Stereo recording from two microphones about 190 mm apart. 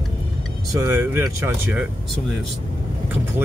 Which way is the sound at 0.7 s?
15° right (ahead or behind).